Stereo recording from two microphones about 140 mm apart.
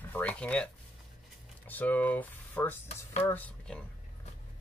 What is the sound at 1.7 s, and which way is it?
Speech, 10° left (ahead or behind).